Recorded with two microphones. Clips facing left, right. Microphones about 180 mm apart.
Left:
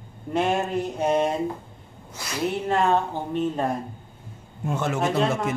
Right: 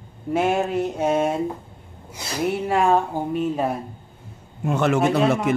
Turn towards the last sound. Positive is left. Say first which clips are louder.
# right 4 dB
turn(degrees=-70)  # may be behind; listen again after turning